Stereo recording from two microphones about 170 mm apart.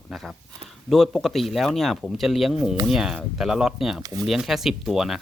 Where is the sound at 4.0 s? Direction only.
20° right (ahead or behind).